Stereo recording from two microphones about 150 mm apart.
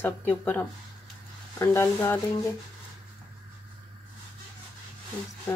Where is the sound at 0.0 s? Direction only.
15° left (ahead or behind).